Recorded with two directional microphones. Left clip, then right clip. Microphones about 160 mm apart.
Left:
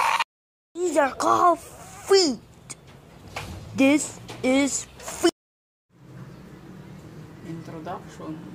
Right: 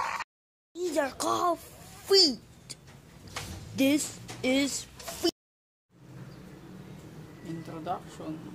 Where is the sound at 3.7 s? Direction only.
Centre (ahead or behind).